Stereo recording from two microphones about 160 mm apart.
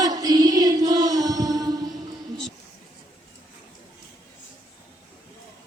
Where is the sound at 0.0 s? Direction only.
25° right (ahead or behind).